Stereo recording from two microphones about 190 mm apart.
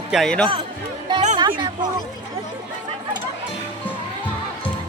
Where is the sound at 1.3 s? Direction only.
25° right (ahead or behind).